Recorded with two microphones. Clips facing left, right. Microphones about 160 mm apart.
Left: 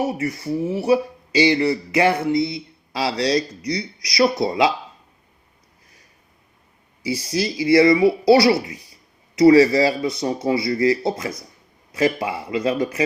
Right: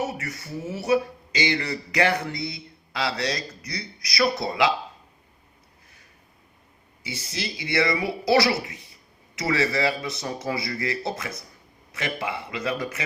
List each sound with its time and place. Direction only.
0.0 s speech: 30° left (ahead or behind)
7.0 s speech: 30° left (ahead or behind)
8.7 s throat clearing: 25° right (ahead or behind)
9.4 s speech: 30° left (ahead or behind)